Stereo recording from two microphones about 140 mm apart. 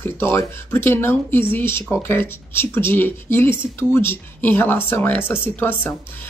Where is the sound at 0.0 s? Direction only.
15° left (ahead or behind).